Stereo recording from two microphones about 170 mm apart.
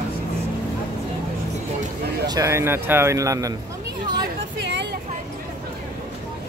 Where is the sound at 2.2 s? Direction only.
20° right (ahead or behind).